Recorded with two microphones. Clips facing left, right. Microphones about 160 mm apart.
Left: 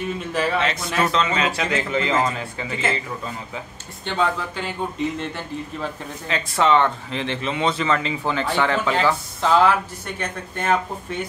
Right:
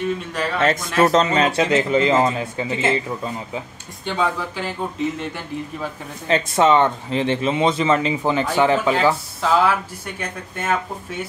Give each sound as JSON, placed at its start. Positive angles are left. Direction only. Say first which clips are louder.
{"t": 0.3, "sound": "a man's voice", "louder": "left 2 dB", "side_deg": 5}
{"t": 0.6, "sound": "speech", "louder": "right 5 dB", "side_deg": -50}
{"t": 1.5, "sound": "speech", "louder": "right 6 dB", "side_deg": -25}
{"t": 4.0, "sound": "speech", "louder": "right 1 dB", "side_deg": -5}
{"t": 6.3, "sound": "speech", "louder": "right 3 dB", "side_deg": -20}